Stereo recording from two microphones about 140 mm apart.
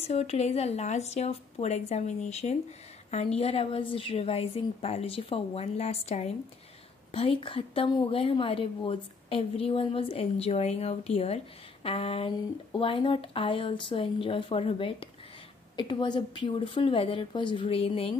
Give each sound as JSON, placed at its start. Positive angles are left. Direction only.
{"t": 0.0, "sound": "a woman's voice", "side_deg": 50}